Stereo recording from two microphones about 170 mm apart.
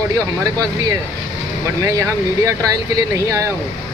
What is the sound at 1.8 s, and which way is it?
Speech, 20° right (ahead or behind).